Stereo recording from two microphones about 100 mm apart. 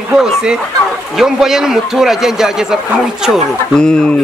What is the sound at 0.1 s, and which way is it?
A man's voice, 5° right (ahead or behind).